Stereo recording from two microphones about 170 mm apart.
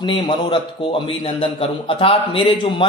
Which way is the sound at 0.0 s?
30° left (ahead or behind).